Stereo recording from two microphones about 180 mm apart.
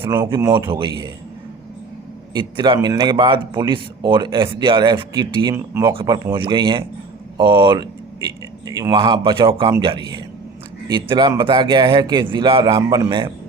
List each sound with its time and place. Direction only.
0.3 s a man's voice: 25° right (ahead or behind)
2.3 s a man's voice: 25° right (ahead or behind)
5.9 s a man's voice: 30° right (ahead or behind)